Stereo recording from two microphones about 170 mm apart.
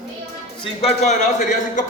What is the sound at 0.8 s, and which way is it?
A man's voice, 40° left (ahead or behind).